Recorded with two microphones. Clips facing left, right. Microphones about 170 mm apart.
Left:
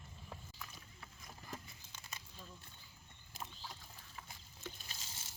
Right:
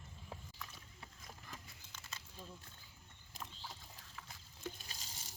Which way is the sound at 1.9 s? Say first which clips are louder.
Even; 15° left (ahead or behind).